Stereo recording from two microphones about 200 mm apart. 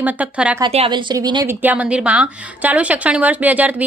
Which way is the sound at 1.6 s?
5° right (ahead or behind).